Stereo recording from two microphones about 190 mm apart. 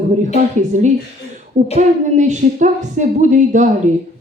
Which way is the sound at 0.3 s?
40° right (ahead or behind).